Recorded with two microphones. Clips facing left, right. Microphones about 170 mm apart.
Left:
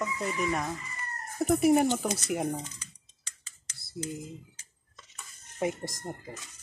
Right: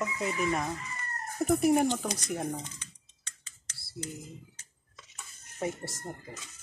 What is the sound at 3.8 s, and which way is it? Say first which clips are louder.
Cutlery: left 3 dB; 20° left (ahead or behind).